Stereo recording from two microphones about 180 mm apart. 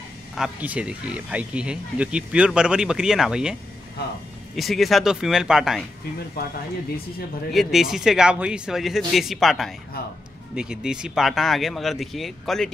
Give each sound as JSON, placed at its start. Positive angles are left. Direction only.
{"t": 0.4, "sound": "speech", "side_deg": -5}
{"t": 4.6, "sound": "speech", "side_deg": 0}
{"t": 6.4, "sound": "speech", "side_deg": 60}
{"t": 7.5, "sound": "speech", "side_deg": 0}
{"t": 10.0, "sound": "speech", "side_deg": 60}
{"t": 10.5, "sound": "speech", "side_deg": -5}